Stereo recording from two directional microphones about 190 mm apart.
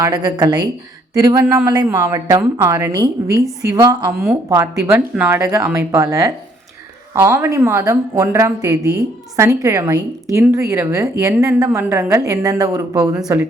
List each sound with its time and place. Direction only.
0.0 s a woman's voice: 20° right (ahead or behind)